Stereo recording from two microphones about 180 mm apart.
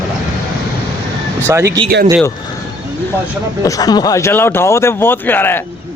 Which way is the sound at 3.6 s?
20° left (ahead or behind).